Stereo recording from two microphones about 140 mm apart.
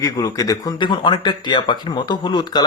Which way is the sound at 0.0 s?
25° left (ahead or behind).